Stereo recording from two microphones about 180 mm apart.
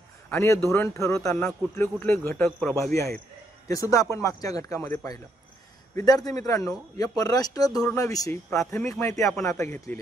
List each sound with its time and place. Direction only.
0.3 s a man's voice: 15° left (ahead or behind)